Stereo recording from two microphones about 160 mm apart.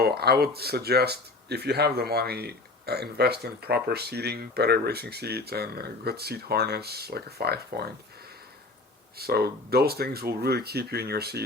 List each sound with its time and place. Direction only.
0.0 s speech: 80° right
9.1 s speech: 75° right (ahead or behind)